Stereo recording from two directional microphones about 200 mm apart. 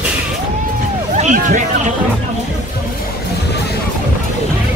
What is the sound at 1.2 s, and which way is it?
Music, 40° right (ahead or behind).